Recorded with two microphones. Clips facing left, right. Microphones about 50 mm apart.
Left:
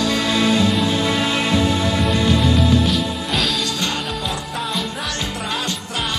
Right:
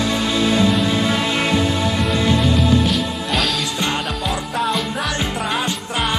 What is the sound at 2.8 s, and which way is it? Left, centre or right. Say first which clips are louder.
Music: even; centre.